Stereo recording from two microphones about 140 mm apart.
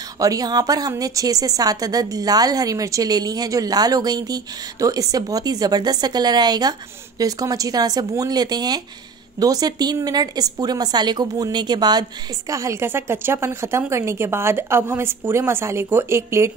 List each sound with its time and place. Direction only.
0.2 s a woman's voice: 25° right (ahead or behind)